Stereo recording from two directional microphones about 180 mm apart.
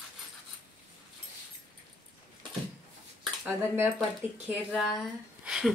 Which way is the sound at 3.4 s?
15° right (ahead or behind).